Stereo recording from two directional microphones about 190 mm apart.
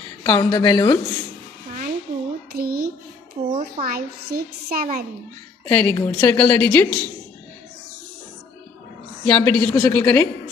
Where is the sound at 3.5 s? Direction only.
45° right (ahead or behind).